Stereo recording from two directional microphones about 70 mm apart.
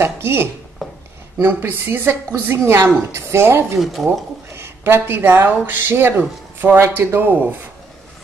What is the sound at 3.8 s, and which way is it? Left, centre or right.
Speech, centre.